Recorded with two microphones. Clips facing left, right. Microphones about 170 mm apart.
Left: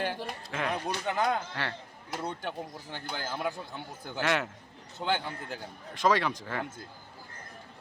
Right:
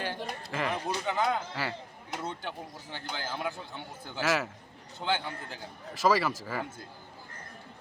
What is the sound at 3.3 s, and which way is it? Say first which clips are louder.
A man's voice: left 2 dB; centre (ahead or behind).